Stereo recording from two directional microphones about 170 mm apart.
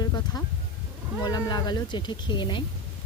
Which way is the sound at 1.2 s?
25° left (ahead or behind).